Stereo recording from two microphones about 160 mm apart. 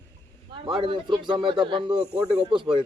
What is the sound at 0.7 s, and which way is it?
Speech, 30° right (ahead or behind).